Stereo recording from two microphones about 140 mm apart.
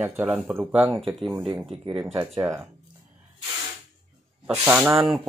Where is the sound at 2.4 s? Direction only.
20° right (ahead or behind).